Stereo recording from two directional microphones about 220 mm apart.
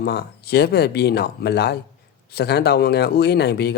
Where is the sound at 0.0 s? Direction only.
45° left (ahead or behind).